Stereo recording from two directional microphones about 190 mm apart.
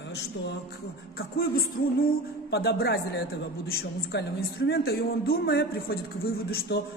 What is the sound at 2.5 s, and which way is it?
A man's voice, 55° left (ahead or behind).